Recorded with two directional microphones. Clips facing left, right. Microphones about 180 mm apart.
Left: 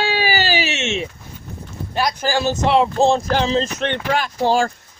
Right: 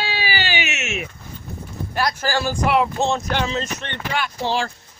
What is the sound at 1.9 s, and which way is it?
Speech, 15° left (ahead or behind).